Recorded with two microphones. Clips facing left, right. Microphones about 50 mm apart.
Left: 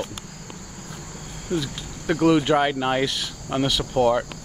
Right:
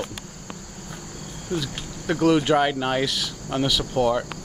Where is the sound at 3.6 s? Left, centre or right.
Centre.